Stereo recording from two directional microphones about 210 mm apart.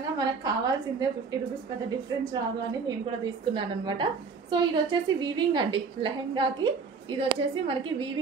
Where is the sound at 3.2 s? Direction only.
20° right (ahead or behind).